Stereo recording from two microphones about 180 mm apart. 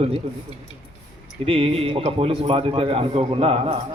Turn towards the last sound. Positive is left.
turn(degrees=-30)  # may be behind; listen again after turning